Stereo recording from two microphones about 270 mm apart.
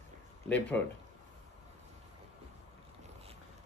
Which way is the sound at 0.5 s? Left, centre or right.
Centre.